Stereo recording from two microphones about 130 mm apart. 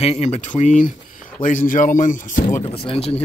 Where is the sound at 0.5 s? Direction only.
75° left (ahead or behind).